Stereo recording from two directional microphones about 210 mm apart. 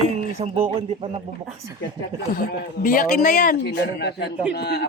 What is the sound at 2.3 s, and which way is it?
Speech, 40° left (ahead or behind).